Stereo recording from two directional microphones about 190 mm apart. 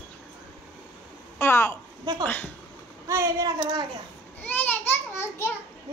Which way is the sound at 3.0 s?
15° right (ahead or behind).